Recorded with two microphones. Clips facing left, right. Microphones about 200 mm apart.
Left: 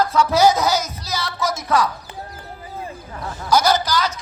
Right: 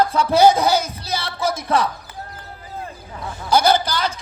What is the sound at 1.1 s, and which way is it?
Speech, 30° right (ahead or behind).